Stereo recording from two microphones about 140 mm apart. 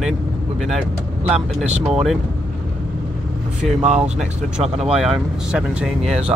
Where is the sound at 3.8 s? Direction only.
50° right (ahead or behind).